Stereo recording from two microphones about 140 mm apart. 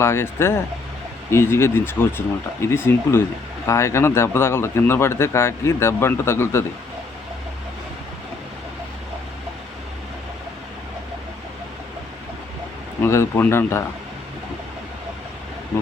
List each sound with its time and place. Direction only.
0.0 s speech: 20° left (ahead or behind)
13.0 s speech: 20° left (ahead or behind)